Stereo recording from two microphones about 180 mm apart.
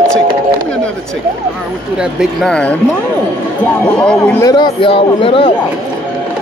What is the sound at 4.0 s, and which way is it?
Speech, 5° left (ahead or behind).